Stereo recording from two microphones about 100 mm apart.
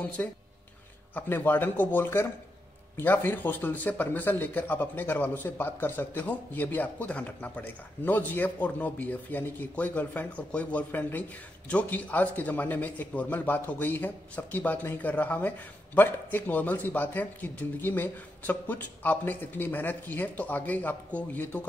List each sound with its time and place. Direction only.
0.2 s speech: 20° left (ahead or behind)